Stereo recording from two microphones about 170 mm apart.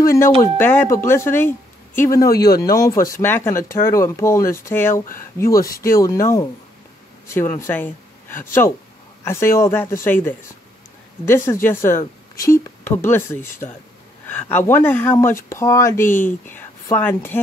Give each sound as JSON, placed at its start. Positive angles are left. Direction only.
{"t": 0.0, "sound": "speech", "side_deg": 15}